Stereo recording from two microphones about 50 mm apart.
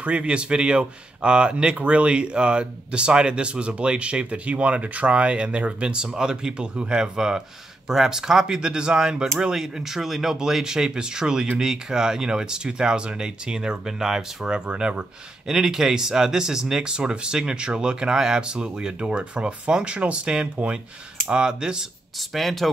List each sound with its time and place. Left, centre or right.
0.0 s a man's voice: right
22.3 s speech: centre